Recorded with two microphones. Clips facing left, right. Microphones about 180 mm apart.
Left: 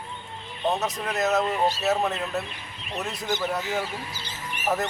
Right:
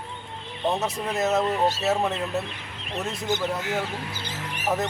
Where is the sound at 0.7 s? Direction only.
30° right (ahead or behind).